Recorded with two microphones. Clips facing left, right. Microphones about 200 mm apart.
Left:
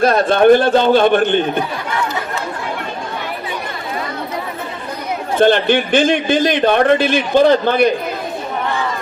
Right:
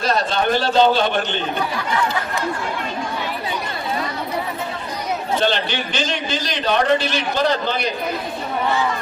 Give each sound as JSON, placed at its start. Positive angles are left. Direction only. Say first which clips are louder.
{"t": 0.0, "sound": "a man's voice", "louder": "left 9 dB", "side_deg": 55}
{"t": 5.4, "sound": "a man's voice", "louder": "left 13 dB", "side_deg": 55}